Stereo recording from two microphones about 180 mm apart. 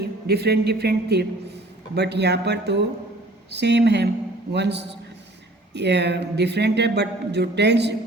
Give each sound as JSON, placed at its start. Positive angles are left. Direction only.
{"t": 0.0, "sound": "speech", "side_deg": -65}